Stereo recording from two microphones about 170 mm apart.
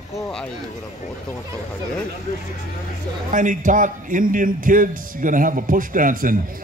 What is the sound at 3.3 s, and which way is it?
A man's voice, 50° right (ahead or behind).